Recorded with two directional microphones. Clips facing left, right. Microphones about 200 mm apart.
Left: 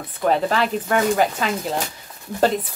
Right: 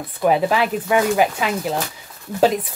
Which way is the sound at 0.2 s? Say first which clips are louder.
Right 2 dB; 10° right (ahead or behind).